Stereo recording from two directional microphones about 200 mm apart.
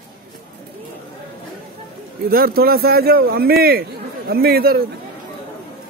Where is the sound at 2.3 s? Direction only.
50° right (ahead or behind).